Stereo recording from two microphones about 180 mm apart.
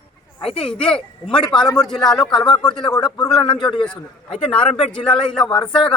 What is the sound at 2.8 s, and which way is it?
Speech, 20° left (ahead or behind).